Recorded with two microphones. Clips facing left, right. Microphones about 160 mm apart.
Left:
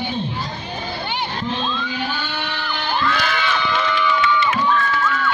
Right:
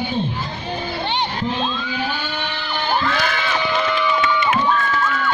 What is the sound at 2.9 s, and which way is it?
Music, 40° right (ahead or behind).